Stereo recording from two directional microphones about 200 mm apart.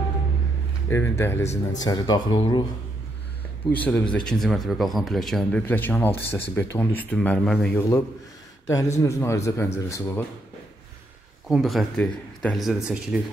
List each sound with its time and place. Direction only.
0.8 s speech: 10° left (ahead or behind)
3.7 s speech: 10° left (ahead or behind)
11.4 s speech: centre (ahead or behind)